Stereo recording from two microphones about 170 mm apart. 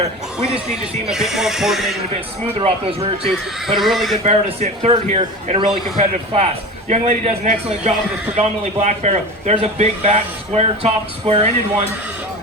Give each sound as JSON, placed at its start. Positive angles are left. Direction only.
{"t": 1.1, "sound": "speech", "side_deg": 0}
{"t": 2.6, "sound": "a man's voice", "side_deg": -35}
{"t": 3.8, "sound": "speech", "side_deg": 0}
{"t": 4.2, "sound": "a man's voice", "side_deg": -40}